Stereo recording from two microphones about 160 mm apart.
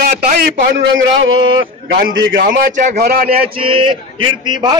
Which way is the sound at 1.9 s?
75° right (ahead or behind).